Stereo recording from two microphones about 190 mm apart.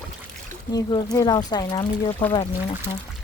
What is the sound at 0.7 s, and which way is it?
Speech, 20° left (ahead or behind).